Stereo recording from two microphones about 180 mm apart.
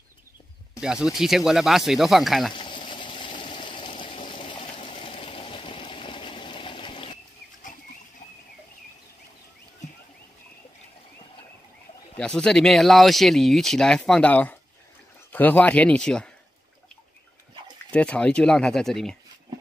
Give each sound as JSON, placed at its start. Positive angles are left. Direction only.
{"t": 0.7, "sound": "speech", "side_deg": -5}
{"t": 2.5, "sound": "a sound", "side_deg": 25}
{"t": 12.2, "sound": "speech", "side_deg": 5}
{"t": 17.9, "sound": "speech", "side_deg": 5}